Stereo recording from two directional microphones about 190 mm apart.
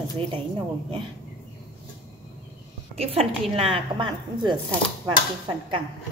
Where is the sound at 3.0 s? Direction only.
30° right (ahead or behind).